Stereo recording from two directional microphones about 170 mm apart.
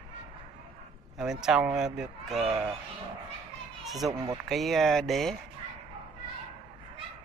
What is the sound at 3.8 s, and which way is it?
Speech, centre (ahead or behind).